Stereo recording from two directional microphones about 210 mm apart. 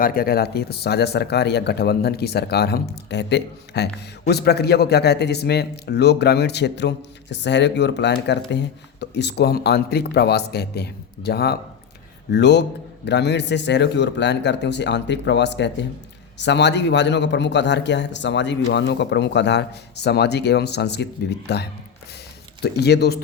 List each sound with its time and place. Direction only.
0.0 s a man's voice: 45° left (ahead or behind)